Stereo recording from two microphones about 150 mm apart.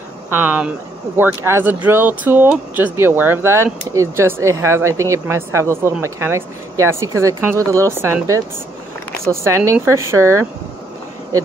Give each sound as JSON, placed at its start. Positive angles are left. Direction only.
{"t": 0.3, "sound": "speech", "side_deg": -15}